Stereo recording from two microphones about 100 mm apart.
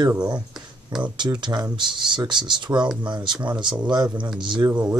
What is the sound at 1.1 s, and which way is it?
Speech, 50° right (ahead or behind).